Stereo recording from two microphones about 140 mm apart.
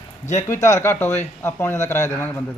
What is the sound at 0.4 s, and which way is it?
Speech, 20° left (ahead or behind).